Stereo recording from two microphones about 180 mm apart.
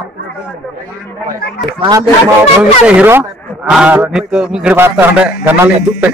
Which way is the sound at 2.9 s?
10° right (ahead or behind).